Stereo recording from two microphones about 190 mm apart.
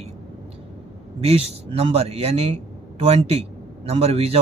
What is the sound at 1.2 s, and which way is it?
A man's voice, 30° right (ahead or behind).